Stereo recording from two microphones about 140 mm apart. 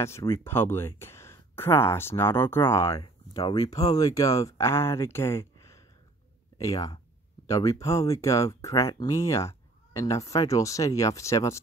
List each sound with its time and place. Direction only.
0.0 s speech: 20° left (ahead or behind)
3.0 s speech: 30° left (ahead or behind)